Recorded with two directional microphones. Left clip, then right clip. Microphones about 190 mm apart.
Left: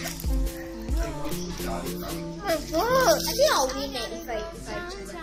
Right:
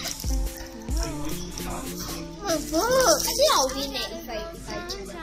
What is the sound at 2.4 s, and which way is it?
Speech, 15° right (ahead or behind).